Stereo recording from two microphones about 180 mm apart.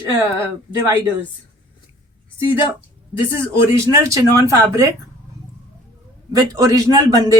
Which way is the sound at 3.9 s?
15° right (ahead or behind).